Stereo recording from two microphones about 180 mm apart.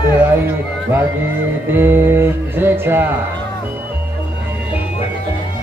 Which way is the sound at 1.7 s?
10° right (ahead or behind).